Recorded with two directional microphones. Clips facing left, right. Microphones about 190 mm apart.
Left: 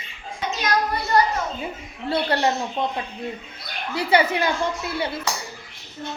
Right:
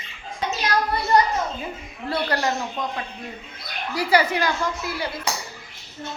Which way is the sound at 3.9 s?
25° left (ahead or behind).